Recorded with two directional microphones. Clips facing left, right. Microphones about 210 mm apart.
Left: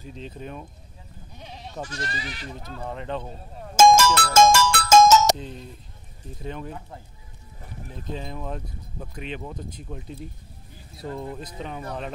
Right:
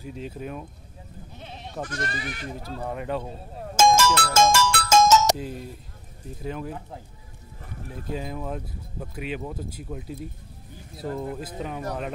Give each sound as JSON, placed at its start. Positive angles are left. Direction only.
{"t": 0.0, "sound": "speech", "side_deg": -10}
{"t": 1.9, "sound": "speech", "side_deg": -55}
{"t": 2.8, "sound": "speech", "side_deg": -15}
{"t": 3.7, "sound": "music", "side_deg": 40}
{"t": 6.4, "sound": "speech", "side_deg": -5}
{"t": 8.1, "sound": "speech", "side_deg": -10}
{"t": 11.1, "sound": "speech", "side_deg": -5}